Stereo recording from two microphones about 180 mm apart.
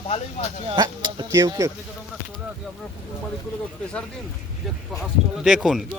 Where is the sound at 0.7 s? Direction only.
25° right (ahead or behind).